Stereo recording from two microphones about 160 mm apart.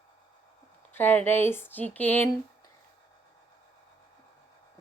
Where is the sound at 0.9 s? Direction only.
15° left (ahead or behind).